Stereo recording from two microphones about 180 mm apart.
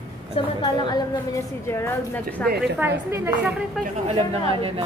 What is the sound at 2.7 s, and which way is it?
Speech, 15° right (ahead or behind).